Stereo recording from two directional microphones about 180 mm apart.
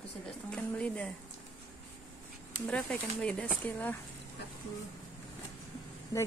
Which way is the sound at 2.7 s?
5° left (ahead or behind).